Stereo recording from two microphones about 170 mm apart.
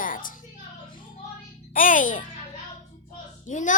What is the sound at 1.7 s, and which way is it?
Music, 50° left (ahead or behind).